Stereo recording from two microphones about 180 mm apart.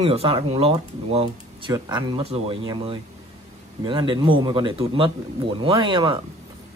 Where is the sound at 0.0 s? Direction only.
30° right (ahead or behind).